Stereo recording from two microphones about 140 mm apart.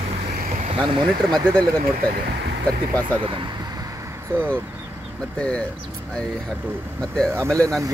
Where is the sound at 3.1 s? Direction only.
35° right (ahead or behind).